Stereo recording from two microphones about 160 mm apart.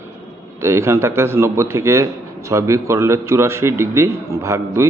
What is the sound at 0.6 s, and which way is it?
A man's voice, 15° right (ahead or behind).